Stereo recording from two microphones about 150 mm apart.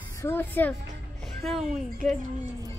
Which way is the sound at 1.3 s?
Centre (ahead or behind).